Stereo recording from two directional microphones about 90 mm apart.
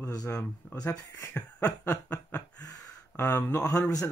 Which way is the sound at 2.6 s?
40° left (ahead or behind).